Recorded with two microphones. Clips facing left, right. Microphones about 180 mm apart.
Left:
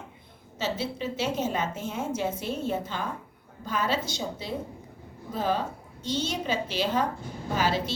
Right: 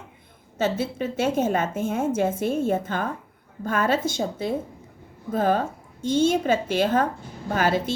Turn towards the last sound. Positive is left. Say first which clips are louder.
# right 4 dB
turn(degrees=-50)  # may be behind; listen again after turning